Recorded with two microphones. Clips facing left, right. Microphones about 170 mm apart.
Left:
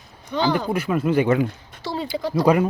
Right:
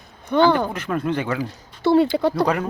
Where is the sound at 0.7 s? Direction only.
5° left (ahead or behind).